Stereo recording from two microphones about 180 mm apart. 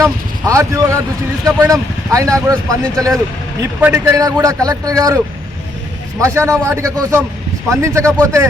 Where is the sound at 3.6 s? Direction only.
15° right (ahead or behind).